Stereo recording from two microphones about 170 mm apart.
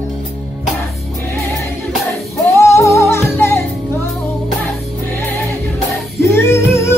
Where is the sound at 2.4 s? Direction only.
15° left (ahead or behind).